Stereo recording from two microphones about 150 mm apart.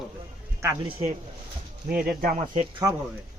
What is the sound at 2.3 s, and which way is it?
Speech, 55° right (ahead or behind).